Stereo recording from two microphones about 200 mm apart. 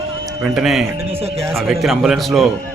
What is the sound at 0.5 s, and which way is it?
A man's voice, centre (ahead or behind).